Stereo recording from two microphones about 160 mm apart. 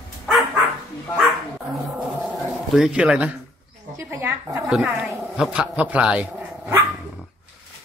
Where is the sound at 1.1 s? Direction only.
Centre (ahead or behind).